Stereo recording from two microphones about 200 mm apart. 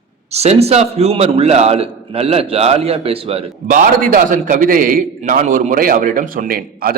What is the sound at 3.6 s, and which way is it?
A man's voice, 45° right (ahead or behind).